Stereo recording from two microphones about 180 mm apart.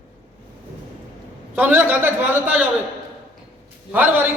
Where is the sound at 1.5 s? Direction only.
10° right (ahead or behind).